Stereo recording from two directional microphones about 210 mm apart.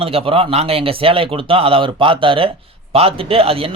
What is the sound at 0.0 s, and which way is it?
A man's voice, 25° right (ahead or behind).